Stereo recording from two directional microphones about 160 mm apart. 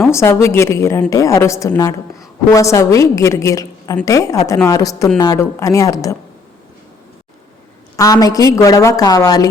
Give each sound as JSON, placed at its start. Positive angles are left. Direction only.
{"t": 0.1, "sound": "a woman's voice", "side_deg": 15}
{"t": 7.9, "sound": "a woman's voice", "side_deg": 20}